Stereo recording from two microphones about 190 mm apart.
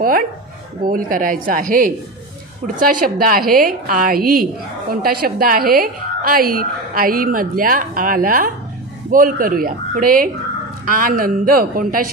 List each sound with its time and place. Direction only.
0.8 s a woman's voice: 45° right (ahead or behind)